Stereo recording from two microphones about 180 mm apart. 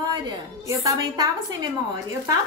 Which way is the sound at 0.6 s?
20° right (ahead or behind).